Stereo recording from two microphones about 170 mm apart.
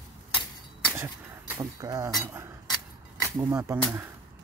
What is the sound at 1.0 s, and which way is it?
Speech, 15° right (ahead or behind).